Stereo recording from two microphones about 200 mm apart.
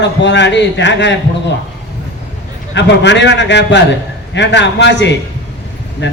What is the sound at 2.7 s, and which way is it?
A man's voice, 60° left (ahead or behind).